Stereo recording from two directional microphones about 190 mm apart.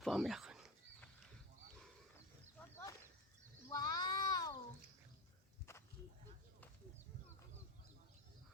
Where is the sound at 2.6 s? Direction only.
15° left (ahead or behind).